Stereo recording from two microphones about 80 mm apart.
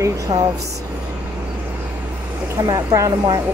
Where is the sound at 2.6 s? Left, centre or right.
Right.